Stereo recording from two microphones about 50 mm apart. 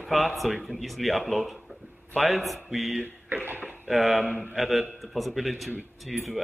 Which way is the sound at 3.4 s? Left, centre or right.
Right.